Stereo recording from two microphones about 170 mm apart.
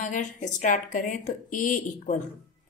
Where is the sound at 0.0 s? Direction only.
45° left (ahead or behind).